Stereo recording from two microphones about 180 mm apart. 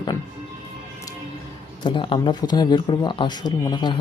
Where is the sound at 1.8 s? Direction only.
30° left (ahead or behind).